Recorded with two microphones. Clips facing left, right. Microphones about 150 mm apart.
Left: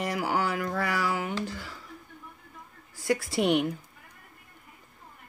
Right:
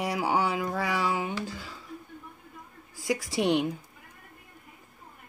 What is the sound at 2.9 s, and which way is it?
Speech, 15° right (ahead or behind).